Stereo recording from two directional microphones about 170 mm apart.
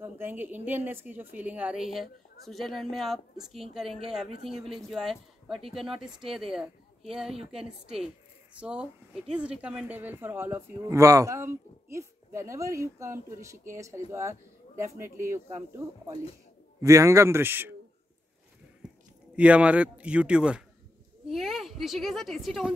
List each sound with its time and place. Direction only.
0.0 s speech: 10° right (ahead or behind)
16.8 s speech: 20° right (ahead or behind)
18.8 s a sound: 5° right (ahead or behind)
19.3 s a woman's voice: 5° right (ahead or behind)